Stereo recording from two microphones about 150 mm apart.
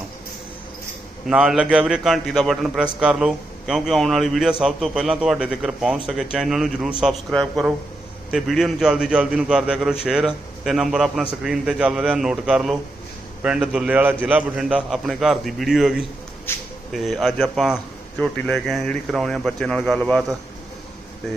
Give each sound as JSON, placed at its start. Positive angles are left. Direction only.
{"t": 1.3, "sound": "a man's voice", "side_deg": -5}
{"t": 16.5, "sound": "speech", "side_deg": 15}
{"t": 16.9, "sound": "a man's voice", "side_deg": 0}